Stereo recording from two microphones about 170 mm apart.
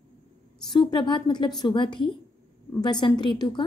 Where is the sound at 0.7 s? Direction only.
25° left (ahead or behind).